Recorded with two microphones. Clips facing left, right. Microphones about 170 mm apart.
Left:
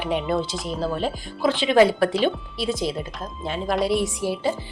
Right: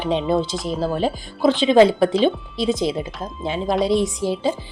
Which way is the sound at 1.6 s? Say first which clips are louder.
Right 3 dB; 20° right (ahead or behind).